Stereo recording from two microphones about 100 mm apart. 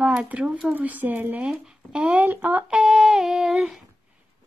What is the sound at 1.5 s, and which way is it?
Speech, 5° right (ahead or behind).